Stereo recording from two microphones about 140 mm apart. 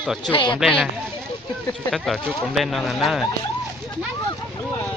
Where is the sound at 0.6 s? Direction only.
5° left (ahead or behind).